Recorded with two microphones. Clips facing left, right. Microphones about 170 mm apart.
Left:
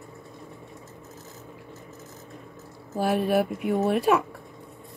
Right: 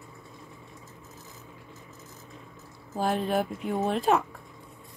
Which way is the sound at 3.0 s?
75° left (ahead or behind).